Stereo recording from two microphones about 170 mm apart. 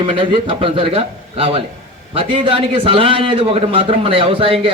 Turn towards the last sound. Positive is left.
turn(degrees=-30)  # may be behind; listen again after turning